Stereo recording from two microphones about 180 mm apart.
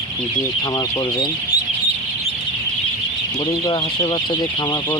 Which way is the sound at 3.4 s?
25° left (ahead or behind).